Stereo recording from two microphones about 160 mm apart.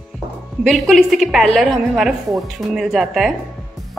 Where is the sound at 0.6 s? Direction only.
Centre (ahead or behind).